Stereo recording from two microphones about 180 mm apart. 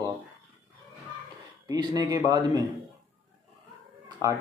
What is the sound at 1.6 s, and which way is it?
Speech, 20° right (ahead or behind).